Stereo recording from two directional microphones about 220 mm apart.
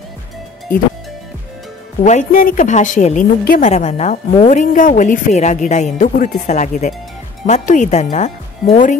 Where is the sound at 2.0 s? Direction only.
35° left (ahead or behind).